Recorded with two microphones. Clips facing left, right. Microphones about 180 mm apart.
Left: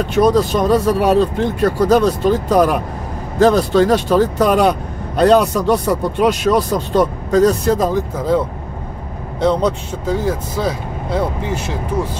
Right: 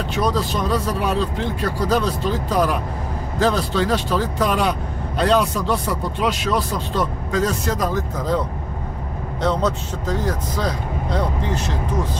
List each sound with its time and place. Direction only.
0.1 s speech: 50° left (ahead or behind); by 7.9 s 30° left (ahead or behind)
9.4 s speech: 10° left (ahead or behind)